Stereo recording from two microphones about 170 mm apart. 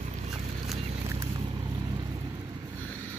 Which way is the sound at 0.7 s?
35° right (ahead or behind).